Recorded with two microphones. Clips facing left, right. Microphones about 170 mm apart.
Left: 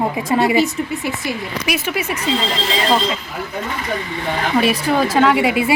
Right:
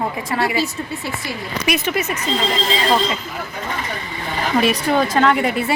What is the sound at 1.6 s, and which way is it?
Speech, 5° left (ahead or behind).